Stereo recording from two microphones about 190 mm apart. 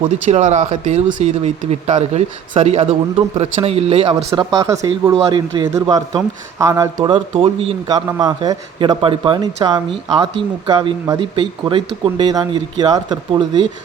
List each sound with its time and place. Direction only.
0.3 s speech: 35° right (ahead or behind)
4.3 s speech: 20° right (ahead or behind)
7.0 s speech: 25° right (ahead or behind)